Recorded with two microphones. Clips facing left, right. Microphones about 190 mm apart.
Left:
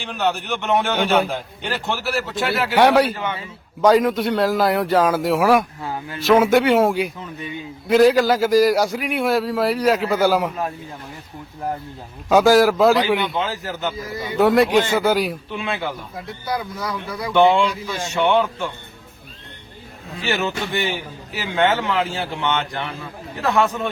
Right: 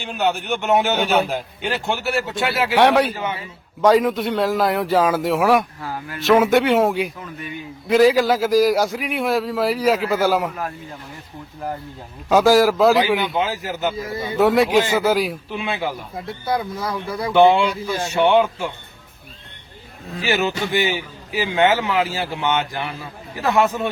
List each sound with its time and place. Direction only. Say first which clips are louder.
0.0 s a man's voice: right 1 dB; centre (ahead or behind)
7.2 s a man's voice: left 1 dB; 20° left (ahead or behind)
7.9 s a man's voice: left 1 dB; centre (ahead or behind)
12.3 s a man's voice: left 1 dB; centre (ahead or behind)
14.1 s speech: right 2 dB; 25° right (ahead or behind)
14.3 s a man's voice: even; centre (ahead or behind)
16.1 s speech: right 3 dB; 25° right (ahead or behind)
17.3 s speech: right 1 dB; 15° right (ahead or behind)
21.3 s a man's voice: right 2 dB; 10° right (ahead or behind)